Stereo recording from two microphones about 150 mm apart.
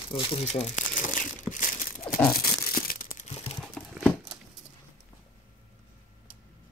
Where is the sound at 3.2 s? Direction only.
45° left (ahead or behind).